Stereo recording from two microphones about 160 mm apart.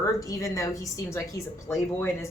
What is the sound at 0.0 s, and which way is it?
A woman's voice, 20° left (ahead or behind).